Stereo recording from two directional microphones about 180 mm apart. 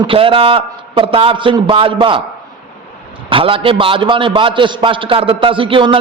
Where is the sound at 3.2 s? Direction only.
30° right (ahead or behind).